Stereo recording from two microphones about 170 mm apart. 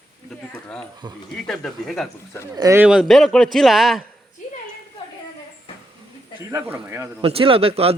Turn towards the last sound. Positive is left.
turn(degrees=-35)  # may be behind; listen again after turning